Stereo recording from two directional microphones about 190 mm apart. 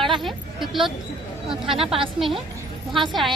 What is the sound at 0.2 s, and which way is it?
A woman's voice, centre (ahead or behind).